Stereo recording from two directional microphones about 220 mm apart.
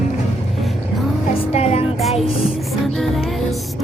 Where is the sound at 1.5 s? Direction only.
30° left (ahead or behind).